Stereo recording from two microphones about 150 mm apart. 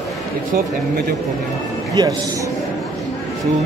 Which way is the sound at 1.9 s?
25° right (ahead or behind).